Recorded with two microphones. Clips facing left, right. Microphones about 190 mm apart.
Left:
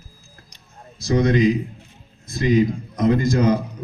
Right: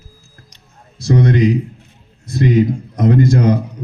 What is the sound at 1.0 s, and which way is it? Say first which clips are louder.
Speech: right 3 dB; 65° right (ahead or behind).